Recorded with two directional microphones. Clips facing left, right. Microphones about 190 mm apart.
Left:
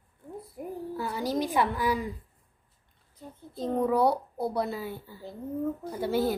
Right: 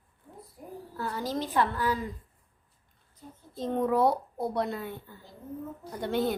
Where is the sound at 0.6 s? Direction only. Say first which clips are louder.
Left 9 dB; 70° left (ahead or behind).